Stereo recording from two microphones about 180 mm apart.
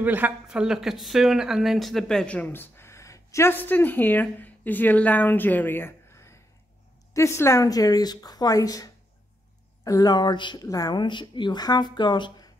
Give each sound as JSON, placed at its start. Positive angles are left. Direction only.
{"t": 0.0, "sound": "a woman's voice", "side_deg": -10}